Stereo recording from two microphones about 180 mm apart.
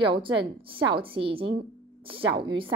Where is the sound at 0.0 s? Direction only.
30° right (ahead or behind).